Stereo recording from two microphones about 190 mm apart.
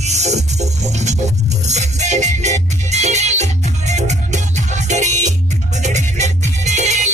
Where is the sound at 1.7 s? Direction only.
35° right (ahead or behind).